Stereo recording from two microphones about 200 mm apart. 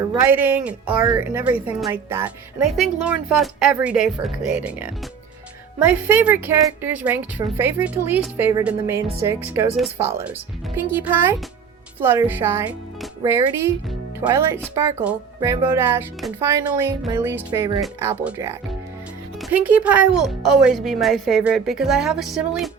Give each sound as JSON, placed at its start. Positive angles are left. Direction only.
{"t": 0.2, "sound": "a woman's voice", "side_deg": -10}